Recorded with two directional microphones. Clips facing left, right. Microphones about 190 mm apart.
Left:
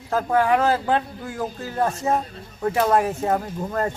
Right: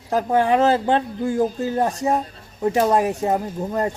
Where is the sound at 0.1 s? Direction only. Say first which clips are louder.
Right 1 dB; 20° right (ahead or behind).